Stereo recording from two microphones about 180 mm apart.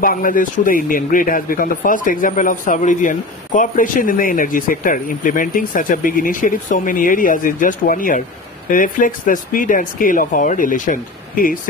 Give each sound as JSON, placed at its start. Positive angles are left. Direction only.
{"t": 0.0, "sound": "speech", "side_deg": 50}